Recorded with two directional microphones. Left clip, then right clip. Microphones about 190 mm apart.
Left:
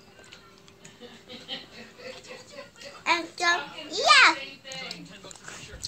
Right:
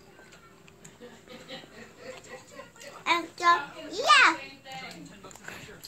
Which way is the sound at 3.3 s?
40° left (ahead or behind).